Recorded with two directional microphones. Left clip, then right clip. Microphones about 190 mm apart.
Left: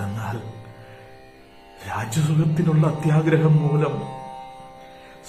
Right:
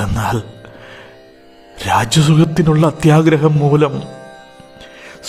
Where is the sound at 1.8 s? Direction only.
45° right (ahead or behind).